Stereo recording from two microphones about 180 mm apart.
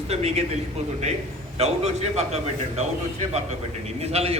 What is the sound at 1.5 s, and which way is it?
A man's voice, 35° right (ahead or behind).